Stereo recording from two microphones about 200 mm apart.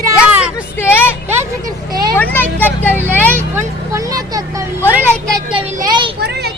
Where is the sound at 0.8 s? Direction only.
10° left (ahead or behind).